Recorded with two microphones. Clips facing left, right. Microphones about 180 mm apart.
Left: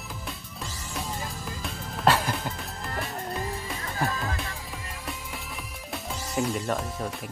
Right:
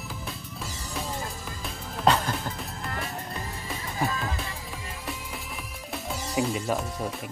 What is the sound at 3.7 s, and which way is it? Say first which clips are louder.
Music: right 3 dB; centre (ahead or behind).